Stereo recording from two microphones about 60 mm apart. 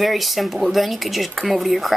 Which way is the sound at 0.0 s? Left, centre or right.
Centre.